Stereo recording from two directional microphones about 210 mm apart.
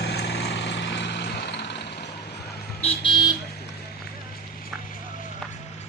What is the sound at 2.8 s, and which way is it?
Vehicle, 25° left (ahead or behind).